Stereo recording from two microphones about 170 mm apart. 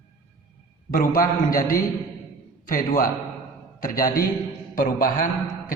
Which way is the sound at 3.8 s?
55° left (ahead or behind).